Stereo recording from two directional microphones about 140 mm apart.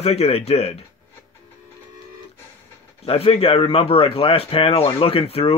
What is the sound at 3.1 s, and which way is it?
A man's voice, 45° left (ahead or behind).